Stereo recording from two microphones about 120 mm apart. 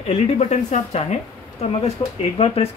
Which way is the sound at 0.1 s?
70° left (ahead or behind).